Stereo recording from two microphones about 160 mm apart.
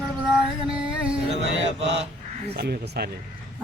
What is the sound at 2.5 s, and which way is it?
Speech, 90° right.